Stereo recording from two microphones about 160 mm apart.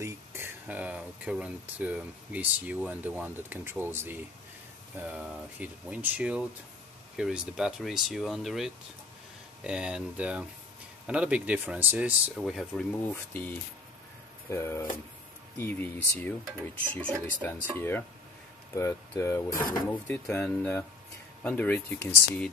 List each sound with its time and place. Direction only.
0.0 s speech: 15° right (ahead or behind)
14.5 s speech: 15° left (ahead or behind)
19.5 s speech: 60° left (ahead or behind)
20.1 s speech: 15° left (ahead or behind)